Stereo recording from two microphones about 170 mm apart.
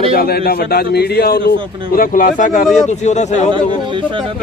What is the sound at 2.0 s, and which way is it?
Speech, 55° left (ahead or behind).